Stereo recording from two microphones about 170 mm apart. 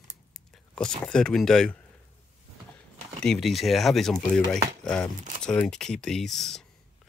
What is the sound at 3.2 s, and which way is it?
Speech, centre (ahead or behind).